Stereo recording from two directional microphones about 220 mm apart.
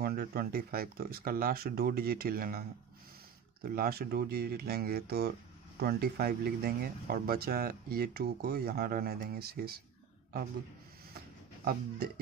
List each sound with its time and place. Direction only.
0.0 s speech: 45° right (ahead or behind)
3.6 s speech: 40° right (ahead or behind)
11.1 s a sound: 45° right (ahead or behind)